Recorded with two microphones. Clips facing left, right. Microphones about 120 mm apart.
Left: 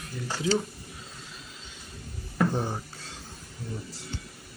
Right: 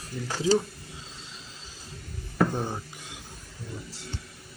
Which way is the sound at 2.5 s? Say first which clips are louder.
Left 1 dB; 15° left (ahead or behind).